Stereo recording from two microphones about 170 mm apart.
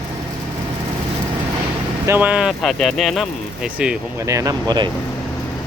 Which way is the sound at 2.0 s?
10° right (ahead or behind).